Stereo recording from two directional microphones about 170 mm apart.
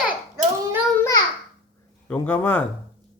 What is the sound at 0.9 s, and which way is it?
Speech, 15° left (ahead or behind).